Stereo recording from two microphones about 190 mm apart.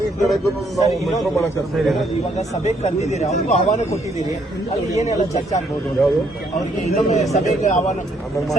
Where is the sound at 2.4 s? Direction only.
35° left (ahead or behind).